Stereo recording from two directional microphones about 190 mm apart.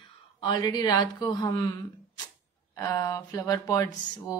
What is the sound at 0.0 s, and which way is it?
Speech, 25° left (ahead or behind).